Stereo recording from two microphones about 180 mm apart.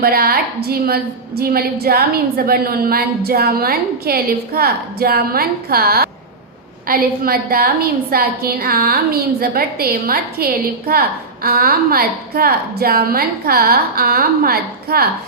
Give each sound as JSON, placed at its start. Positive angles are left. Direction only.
{"t": 0.0, "sound": "a woman's voice", "side_deg": -55}